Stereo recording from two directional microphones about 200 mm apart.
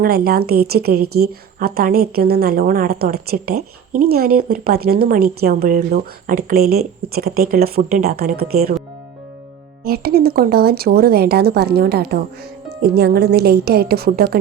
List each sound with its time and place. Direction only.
0.0 s a woman's voice: 50° right (ahead or behind)
9.8 s a woman's voice: 50° right (ahead or behind)